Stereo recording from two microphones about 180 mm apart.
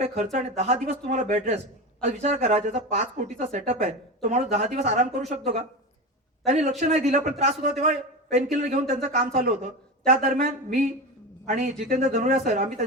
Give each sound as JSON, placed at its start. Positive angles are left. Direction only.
{"t": 0.0, "sound": "speech", "side_deg": -40}